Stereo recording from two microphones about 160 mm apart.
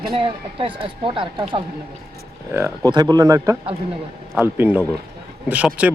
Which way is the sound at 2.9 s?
25° right (ahead or behind).